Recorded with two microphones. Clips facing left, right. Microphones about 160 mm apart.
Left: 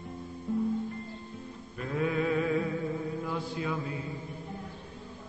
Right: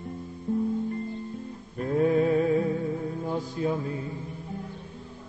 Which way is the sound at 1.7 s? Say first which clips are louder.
Right 7 dB; 40° right (ahead or behind).